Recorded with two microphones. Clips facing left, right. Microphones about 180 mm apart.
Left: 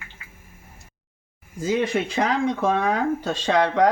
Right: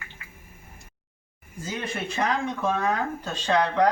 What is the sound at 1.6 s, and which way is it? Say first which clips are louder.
Speech: left 9 dB; 90° left.